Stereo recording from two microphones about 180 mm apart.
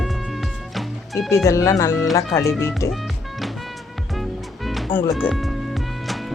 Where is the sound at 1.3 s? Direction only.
15° left (ahead or behind).